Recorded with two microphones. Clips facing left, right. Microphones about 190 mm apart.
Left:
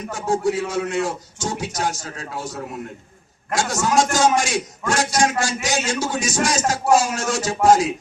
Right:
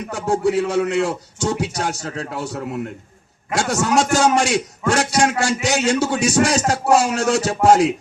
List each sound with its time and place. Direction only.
0.1 s speech: 65° right (ahead or behind)